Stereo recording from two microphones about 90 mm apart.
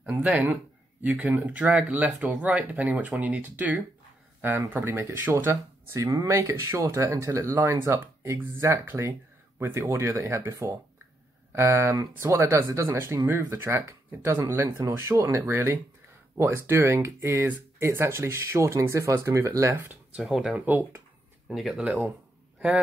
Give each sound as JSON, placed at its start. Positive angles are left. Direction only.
{"t": 0.0, "sound": "speech", "side_deg": -15}
{"t": 20.2, "sound": "speech", "side_deg": -5}
{"t": 20.5, "sound": "speech", "side_deg": -20}
{"t": 21.5, "sound": "speech", "side_deg": -5}